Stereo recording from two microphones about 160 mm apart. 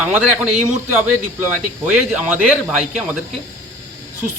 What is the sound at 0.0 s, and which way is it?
A man's voice, 5° right (ahead or behind).